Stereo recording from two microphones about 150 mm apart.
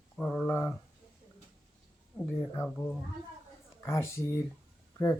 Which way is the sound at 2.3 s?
15° left (ahead or behind).